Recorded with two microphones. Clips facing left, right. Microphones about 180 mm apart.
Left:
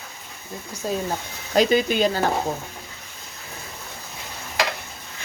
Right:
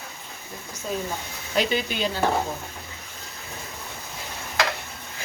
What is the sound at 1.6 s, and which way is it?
Speech, 45° left (ahead or behind).